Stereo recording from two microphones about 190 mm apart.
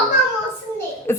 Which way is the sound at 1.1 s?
15° left (ahead or behind).